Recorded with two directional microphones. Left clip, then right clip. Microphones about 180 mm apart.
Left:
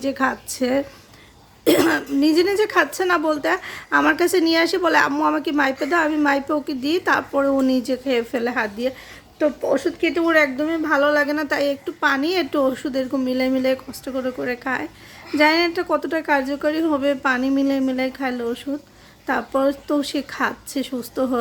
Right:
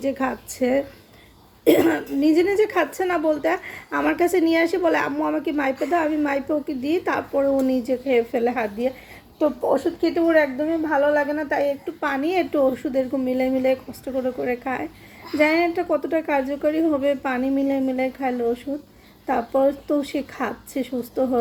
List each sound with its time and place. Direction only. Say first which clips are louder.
0.0 s a woman's voice: left 3 dB; 15° left (ahead or behind)
10.0 s speech: left 2 dB; 30° left (ahead or behind)